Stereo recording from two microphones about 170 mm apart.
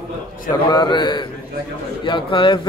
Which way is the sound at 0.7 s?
25° left (ahead or behind).